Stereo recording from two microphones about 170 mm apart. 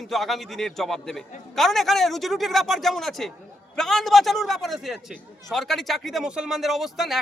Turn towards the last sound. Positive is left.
turn(degrees=0)  # may be behind; listen again after turning